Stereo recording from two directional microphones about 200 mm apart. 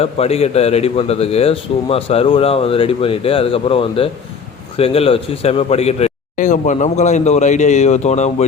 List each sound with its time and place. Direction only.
0.0 s a man's voice: 30° left (ahead or behind)